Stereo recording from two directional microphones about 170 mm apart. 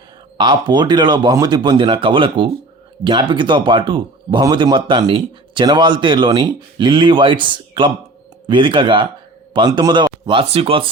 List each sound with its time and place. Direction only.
0.3 s speech: 25° right (ahead or behind)